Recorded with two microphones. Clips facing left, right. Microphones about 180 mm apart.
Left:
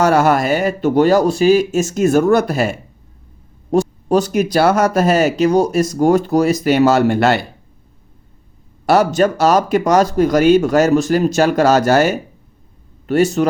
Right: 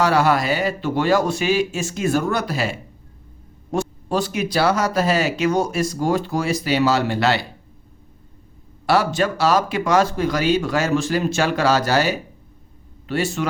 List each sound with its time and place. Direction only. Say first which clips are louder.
0.0 s speech: left 4 dB; 45° left (ahead or behind)
8.9 s a man's voice: left 6 dB; 45° left (ahead or behind)